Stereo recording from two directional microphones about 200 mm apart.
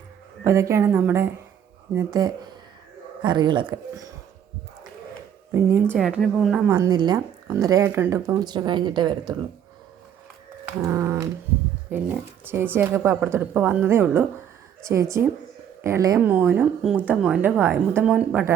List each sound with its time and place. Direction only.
0.4 s a woman's voice: 15° right (ahead or behind)
5.5 s a woman's voice: 10° right (ahead or behind)
6.7 s a woman's voice: 20° right (ahead or behind)
10.8 s speech: 15° right (ahead or behind)
15.8 s speech: 15° right (ahead or behind)